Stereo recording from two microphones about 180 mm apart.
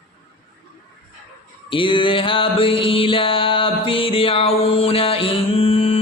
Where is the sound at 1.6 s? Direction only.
30° left (ahead or behind).